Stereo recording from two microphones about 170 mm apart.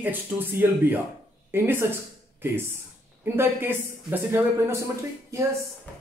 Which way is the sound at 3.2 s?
15° right (ahead or behind).